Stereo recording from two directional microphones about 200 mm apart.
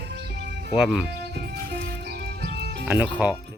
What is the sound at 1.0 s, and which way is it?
Music, 55° right (ahead or behind).